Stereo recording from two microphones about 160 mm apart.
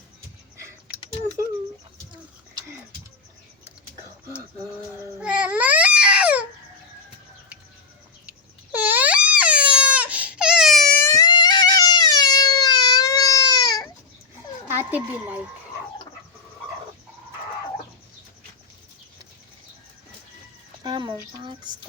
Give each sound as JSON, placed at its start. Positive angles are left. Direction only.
{"t": 5.2, "sound": "baby cry", "side_deg": -10}
{"t": 8.7, "sound": "baby cry", "side_deg": -10}
{"t": 11.0, "sound": "baby cry", "side_deg": 20}
{"t": 14.8, "sound": "a sound", "side_deg": -10}
{"t": 20.8, "sound": "speech", "side_deg": -30}